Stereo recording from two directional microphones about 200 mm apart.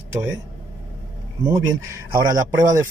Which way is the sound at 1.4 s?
15° right (ahead or behind).